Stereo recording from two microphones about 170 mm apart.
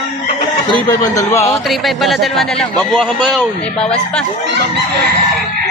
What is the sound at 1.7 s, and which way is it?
A man's voice, centre (ahead or behind).